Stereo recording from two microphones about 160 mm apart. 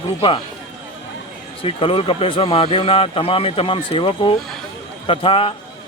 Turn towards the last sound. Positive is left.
turn(degrees=35)  # may be behind; listen again after turning